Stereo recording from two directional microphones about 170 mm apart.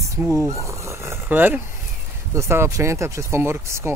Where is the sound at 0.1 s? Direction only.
15° right (ahead or behind).